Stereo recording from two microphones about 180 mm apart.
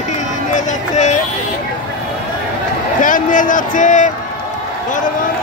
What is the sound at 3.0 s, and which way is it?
Speech, 45° left (ahead or behind).